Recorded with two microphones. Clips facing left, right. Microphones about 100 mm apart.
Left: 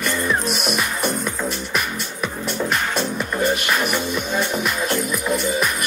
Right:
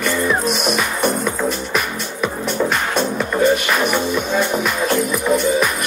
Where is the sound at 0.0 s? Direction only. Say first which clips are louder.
Right 4 dB; centre (ahead or behind).